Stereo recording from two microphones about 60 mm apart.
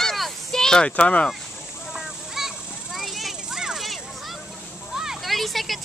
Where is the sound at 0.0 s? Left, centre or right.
Centre.